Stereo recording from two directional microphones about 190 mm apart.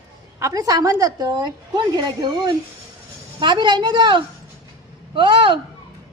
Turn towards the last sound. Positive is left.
turn(degrees=-25)  # may be behind; listen again after turning